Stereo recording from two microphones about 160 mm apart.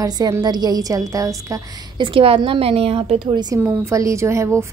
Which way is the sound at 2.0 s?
35° right (ahead or behind).